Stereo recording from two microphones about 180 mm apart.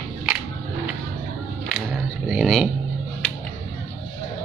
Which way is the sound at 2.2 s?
Centre (ahead or behind).